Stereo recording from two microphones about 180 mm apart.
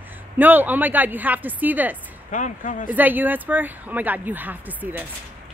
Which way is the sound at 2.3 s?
45° left (ahead or behind).